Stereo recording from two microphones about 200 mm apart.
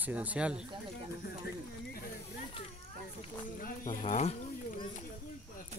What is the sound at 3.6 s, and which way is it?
Speech, 45° left (ahead or behind).